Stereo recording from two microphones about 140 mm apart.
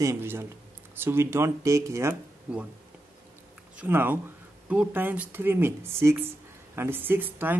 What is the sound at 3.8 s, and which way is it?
Speech, 15° right (ahead or behind).